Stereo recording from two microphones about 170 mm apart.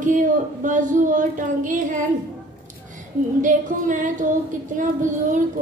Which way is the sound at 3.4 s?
50° right (ahead or behind).